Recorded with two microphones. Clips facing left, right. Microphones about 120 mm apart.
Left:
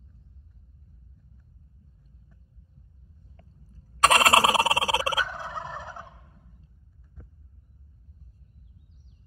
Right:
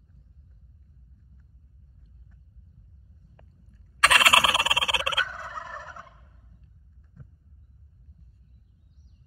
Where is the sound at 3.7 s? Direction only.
35° left (ahead or behind).